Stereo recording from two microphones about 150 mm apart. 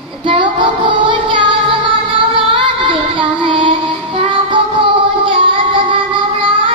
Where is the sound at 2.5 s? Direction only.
35° right (ahead or behind).